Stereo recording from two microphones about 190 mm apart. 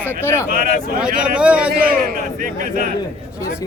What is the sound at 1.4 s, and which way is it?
Speech, 5° right (ahead or behind).